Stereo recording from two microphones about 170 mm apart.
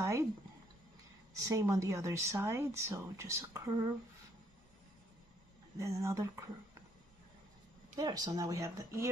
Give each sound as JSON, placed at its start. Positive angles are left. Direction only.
{"t": 0.0, "sound": "a sound", "side_deg": -15}
{"t": 1.5, "sound": "speech", "side_deg": -20}
{"t": 5.8, "sound": "speech", "side_deg": -20}
{"t": 8.0, "sound": "speech", "side_deg": -20}